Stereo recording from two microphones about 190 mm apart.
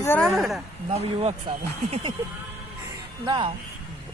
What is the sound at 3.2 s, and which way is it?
Speech, 25° right (ahead or behind).